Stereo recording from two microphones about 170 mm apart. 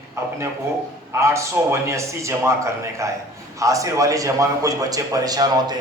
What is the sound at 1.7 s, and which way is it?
A man's voice, 15° right (ahead or behind).